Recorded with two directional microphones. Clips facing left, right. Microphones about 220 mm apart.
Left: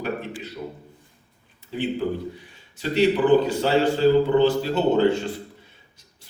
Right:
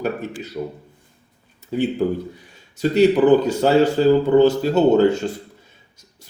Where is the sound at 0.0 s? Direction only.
45° right (ahead or behind).